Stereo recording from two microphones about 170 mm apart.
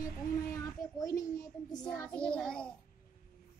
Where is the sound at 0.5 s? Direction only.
20° left (ahead or behind).